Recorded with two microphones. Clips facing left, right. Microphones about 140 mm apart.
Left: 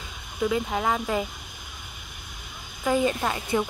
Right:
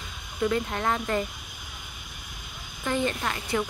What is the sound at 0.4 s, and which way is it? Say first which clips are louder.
Speech: left 1 dB; 5° left (ahead or behind).